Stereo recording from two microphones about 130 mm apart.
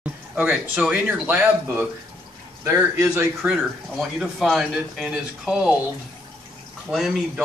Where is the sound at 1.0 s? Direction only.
15° right (ahead or behind).